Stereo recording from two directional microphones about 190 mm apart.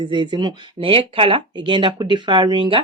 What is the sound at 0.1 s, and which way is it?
Speech, 25° right (ahead or behind).